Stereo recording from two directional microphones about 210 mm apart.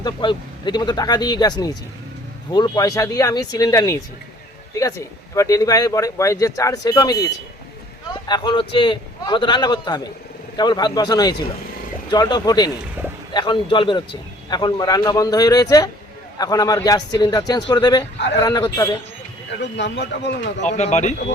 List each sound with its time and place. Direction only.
0.0 s a man's voice: 20° left (ahead or behind)
8.3 s a man's voice: 20° left (ahead or behind)
19.5 s speech: 55° left (ahead or behind)
20.6 s speech: 35° left (ahead or behind)